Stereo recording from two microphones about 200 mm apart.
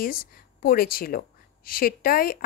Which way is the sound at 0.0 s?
45° left (ahead or behind).